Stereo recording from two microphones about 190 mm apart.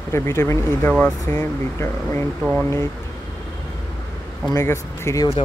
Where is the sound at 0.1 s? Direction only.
15° left (ahead or behind).